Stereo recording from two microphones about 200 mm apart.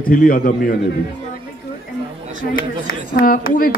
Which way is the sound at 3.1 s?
45° left (ahead or behind).